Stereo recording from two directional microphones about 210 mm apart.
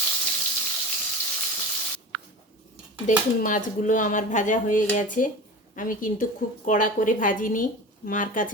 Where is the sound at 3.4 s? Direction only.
40° left (ahead or behind).